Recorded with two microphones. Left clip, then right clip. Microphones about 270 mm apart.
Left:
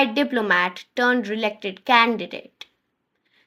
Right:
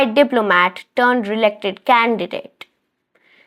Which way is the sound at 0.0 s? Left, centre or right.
Right.